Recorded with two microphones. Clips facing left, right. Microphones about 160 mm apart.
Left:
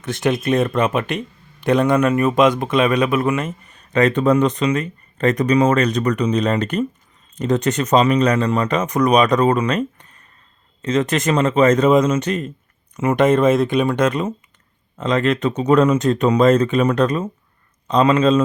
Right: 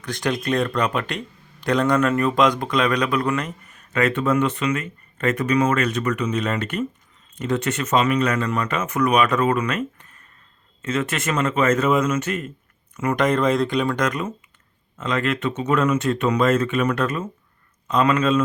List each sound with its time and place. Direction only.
0.0 s a man's voice: 20° left (ahead or behind)